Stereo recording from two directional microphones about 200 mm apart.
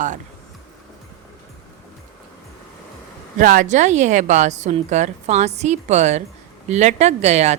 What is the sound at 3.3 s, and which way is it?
A woman's voice, 40° right (ahead or behind).